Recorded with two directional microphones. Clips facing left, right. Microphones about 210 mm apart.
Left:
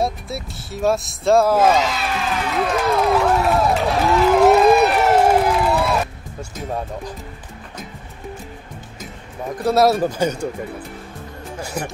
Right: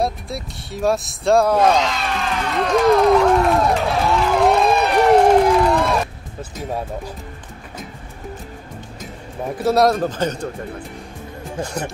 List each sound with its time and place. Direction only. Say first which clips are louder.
0.0 s a sound: even; centre (ahead or behind)
9.6 s speech: even; centre (ahead or behind)
11.6 s speech: right 1 dB; 10° left (ahead or behind)